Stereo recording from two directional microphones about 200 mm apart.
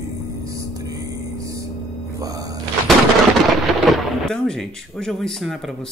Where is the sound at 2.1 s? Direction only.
20° right (ahead or behind).